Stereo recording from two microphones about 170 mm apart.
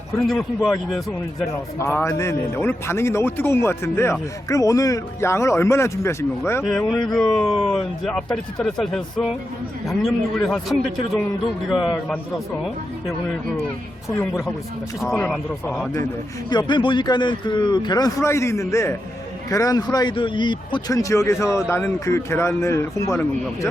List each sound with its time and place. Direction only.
0.3 s a man's voice: centre (ahead or behind)
1.8 s a man's voice: 15° left (ahead or behind)
6.6 s a man's voice: centre (ahead or behind)
15.0 s a man's voice: 15° left (ahead or behind)
16.5 s a man's voice: 25° left (ahead or behind)